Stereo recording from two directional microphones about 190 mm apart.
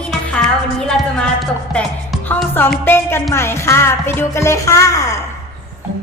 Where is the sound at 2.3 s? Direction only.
10° left (ahead or behind).